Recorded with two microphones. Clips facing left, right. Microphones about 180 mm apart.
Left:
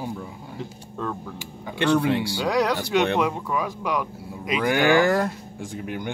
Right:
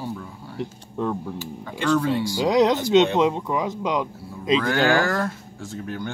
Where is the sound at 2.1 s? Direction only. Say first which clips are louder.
Even; 65° left (ahead or behind).